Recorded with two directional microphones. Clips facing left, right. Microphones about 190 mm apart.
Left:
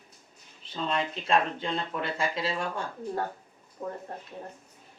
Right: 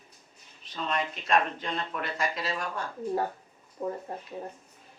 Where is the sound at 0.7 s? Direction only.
25° left (ahead or behind).